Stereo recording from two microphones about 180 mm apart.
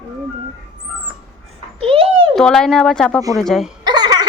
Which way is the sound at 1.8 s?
30° right (ahead or behind).